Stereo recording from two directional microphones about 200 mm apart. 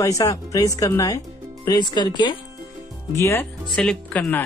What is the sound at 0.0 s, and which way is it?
Speech, 15° left (ahead or behind).